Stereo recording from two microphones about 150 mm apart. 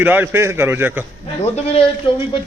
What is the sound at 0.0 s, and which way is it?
Speech, 15° right (ahead or behind).